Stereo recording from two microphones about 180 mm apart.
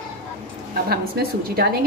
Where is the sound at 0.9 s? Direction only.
60° right (ahead or behind).